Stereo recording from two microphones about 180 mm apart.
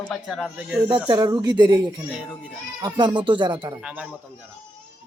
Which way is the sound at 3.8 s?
10° right (ahead or behind).